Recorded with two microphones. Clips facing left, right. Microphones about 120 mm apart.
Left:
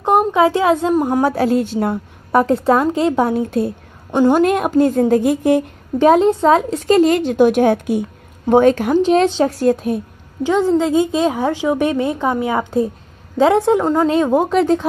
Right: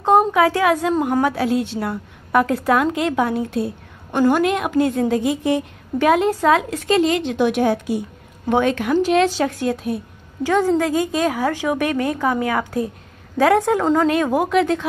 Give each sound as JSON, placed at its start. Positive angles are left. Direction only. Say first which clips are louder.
{"t": 0.3, "sound": "a woman's voice", "louder": "left 3 dB", "side_deg": 25}
{"t": 0.9, "sound": "a woman's voice", "louder": "left 3 dB", "side_deg": 10}
{"t": 1.2, "sound": "a woman's voice", "louder": "left 4 dB", "side_deg": 40}
{"t": 2.3, "sound": "a woman's voice", "louder": "left 3 dB", "side_deg": 30}
{"t": 5.9, "sound": "a woman's voice", "louder": "left 5 dB", "side_deg": 30}
{"t": 8.5, "sound": "a woman's voice", "louder": "left 6 dB", "side_deg": 40}
{"t": 10.4, "sound": "a woman's voice", "louder": "left 2 dB", "side_deg": 15}
{"t": 14.5, "sound": "a woman's voice", "louder": "left 3 dB", "side_deg": 35}